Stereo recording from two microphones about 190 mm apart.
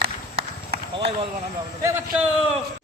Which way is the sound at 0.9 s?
30° right (ahead or behind).